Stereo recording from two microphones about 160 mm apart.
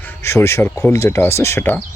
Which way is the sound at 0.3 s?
15° left (ahead or behind).